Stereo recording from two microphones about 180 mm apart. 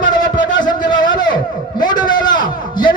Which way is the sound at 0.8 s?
25° left (ahead or behind).